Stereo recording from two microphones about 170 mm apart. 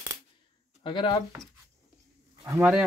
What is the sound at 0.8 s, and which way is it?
Speech, 30° left (ahead or behind).